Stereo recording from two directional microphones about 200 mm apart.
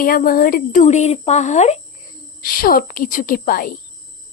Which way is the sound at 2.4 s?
45° left (ahead or behind).